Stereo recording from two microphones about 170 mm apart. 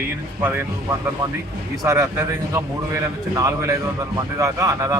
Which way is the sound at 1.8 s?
20° right (ahead or behind).